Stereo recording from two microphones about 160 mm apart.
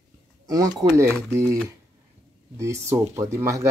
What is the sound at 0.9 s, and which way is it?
Speech, 15° right (ahead or behind).